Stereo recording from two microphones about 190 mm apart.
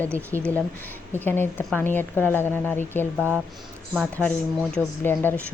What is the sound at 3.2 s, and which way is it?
Speech, 10° right (ahead or behind).